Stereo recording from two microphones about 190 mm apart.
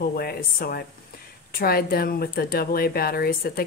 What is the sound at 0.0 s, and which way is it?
A woman's voice, 50° left (ahead or behind).